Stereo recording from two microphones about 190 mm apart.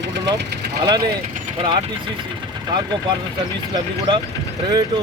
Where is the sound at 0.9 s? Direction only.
25° right (ahead or behind).